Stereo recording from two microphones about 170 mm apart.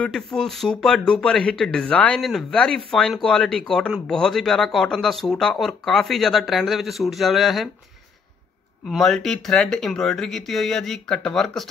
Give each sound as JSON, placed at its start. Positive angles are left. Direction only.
{"t": 0.0, "sound": "speech", "side_deg": 5}
{"t": 8.8, "sound": "speech", "side_deg": 0}